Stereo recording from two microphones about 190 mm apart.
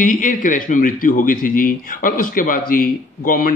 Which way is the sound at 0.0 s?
45° left (ahead or behind).